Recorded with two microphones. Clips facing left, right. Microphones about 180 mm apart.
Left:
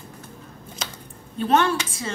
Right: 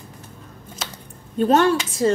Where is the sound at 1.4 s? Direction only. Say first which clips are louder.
Right 4 dB; 40° right (ahead or behind).